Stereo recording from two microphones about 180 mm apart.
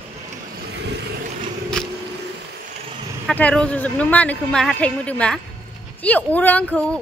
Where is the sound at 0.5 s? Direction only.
65° right (ahead or behind).